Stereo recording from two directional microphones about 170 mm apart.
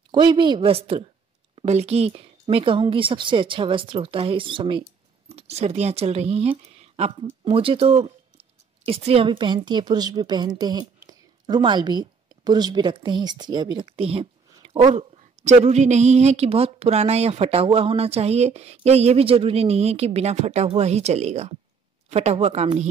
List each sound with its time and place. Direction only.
0.1 s a woman's voice: 25° right (ahead or behind)
14.6 s a sound: 35° right (ahead or behind)
14.9 s a woman's voice: 40° right (ahead or behind)